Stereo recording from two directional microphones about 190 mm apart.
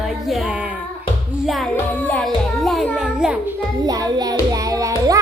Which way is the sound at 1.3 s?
Centre (ahead or behind).